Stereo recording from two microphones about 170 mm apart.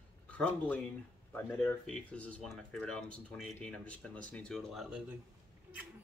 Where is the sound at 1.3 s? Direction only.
5° left (ahead or behind).